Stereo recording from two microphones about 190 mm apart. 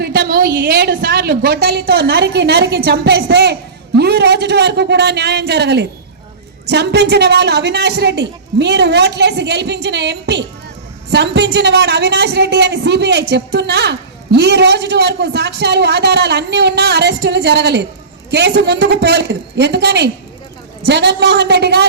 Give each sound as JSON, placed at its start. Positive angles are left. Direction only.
{"t": 0.0, "sound": "a woman's voice", "side_deg": -50}